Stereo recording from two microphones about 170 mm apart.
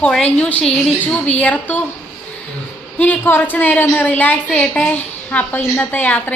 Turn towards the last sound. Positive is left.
turn(degrees=10)  # may be behind; listen again after turning